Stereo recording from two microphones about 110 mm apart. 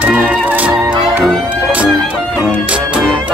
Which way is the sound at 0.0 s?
15° right (ahead or behind).